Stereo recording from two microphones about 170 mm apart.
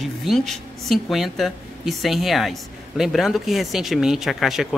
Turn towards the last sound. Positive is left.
turn(degrees=0)  # may be behind; listen again after turning